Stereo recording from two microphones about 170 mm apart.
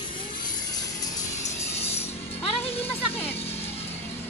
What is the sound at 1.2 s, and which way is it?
Music, 45° left (ahead or behind).